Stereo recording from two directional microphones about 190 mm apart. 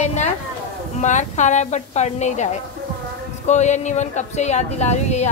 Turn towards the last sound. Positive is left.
turn(degrees=35)  # may be behind; listen again after turning